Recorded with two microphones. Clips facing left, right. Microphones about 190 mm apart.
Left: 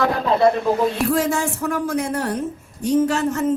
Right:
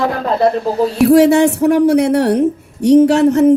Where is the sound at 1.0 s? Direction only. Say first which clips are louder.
Right 12 dB; 70° right (ahead or behind).